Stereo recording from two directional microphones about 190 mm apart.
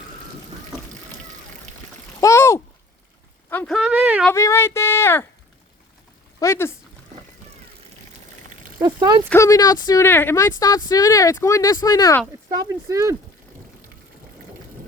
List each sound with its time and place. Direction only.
2.2 s a sound: 15° left (ahead or behind)
3.8 s a sound: 5° right (ahead or behind)
4.3 s speech: 15° left (ahead or behind)
6.4 s speech: 15° left (ahead or behind)
8.8 s speech: 25° right (ahead or behind)
9.3 s speech: 15° left (ahead or behind)
12.5 s speech: 15° right (ahead or behind)